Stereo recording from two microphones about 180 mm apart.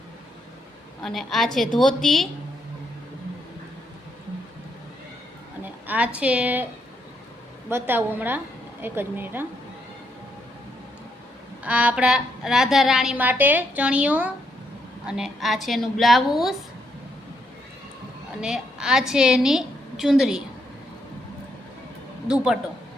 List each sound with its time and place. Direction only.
1.0 s a woman's voice: centre (ahead or behind)
5.6 s a woman's voice: 10° right (ahead or behind)
7.7 s a woman's voice: 10° right (ahead or behind)
11.6 s a woman's voice: 10° right (ahead or behind)
18.3 s a woman's voice: 5° right (ahead or behind)